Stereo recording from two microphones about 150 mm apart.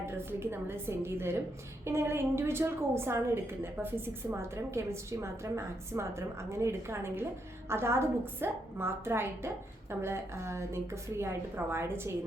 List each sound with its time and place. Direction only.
0.0 s a woman's voice: 15° right (ahead or behind)